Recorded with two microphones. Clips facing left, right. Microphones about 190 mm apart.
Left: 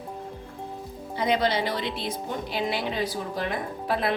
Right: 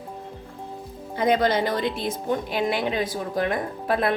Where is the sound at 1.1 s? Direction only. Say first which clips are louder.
Right 4 dB; 50° right (ahead or behind).